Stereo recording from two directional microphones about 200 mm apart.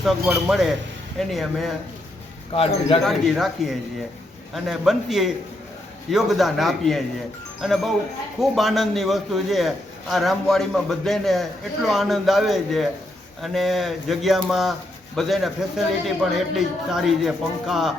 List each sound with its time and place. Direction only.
0.3 s a man's voice: 5° right (ahead or behind)
2.5 s speech: 30° left (ahead or behind)
3.0 s a man's voice: centre (ahead or behind)
4.5 s a man's voice: centre (ahead or behind)